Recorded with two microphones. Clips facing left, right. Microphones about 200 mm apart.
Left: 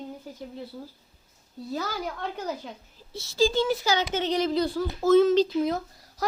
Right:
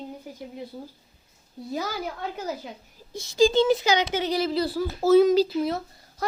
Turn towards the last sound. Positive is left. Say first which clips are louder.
# even
turn(degrees=0)  # may be behind; listen again after turning